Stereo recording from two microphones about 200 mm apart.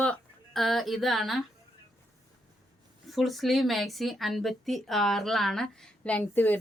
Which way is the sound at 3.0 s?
Centre (ahead or behind).